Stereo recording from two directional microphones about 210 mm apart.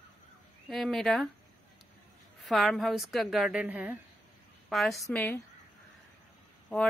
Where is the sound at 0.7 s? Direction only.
Centre (ahead or behind).